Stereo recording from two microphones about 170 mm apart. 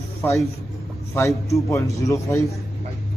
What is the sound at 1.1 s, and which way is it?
A man's voice, 15° left (ahead or behind).